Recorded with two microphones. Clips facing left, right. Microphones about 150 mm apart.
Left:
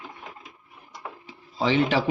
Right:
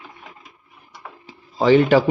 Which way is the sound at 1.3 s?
45° right (ahead or behind).